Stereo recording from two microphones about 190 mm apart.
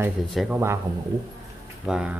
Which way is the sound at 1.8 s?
5° right (ahead or behind).